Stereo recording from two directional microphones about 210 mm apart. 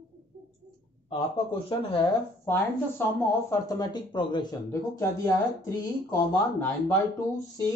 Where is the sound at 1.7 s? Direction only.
25° left (ahead or behind).